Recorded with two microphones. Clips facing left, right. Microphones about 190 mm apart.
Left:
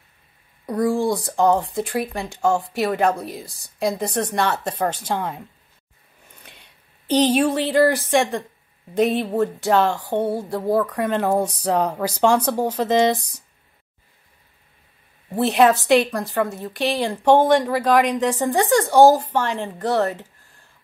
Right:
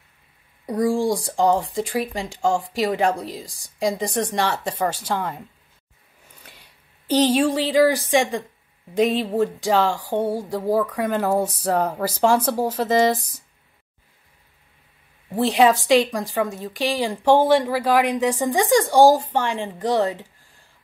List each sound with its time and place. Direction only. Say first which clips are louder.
0.7 s speech: even; 10° right (ahead or behind)
4.5 s speech: left 1 dB; 60° left (ahead or behind)
6.4 s a sound: right 1 dB; 10° right (ahead or behind)
7.4 s speech: even; 10° right (ahead or behind)
15.3 s speech: left 1 dB; 15° right (ahead or behind)